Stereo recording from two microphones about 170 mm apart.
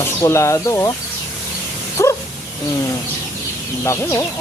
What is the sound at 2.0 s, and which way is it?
Bow-wow, 20° left (ahead or behind).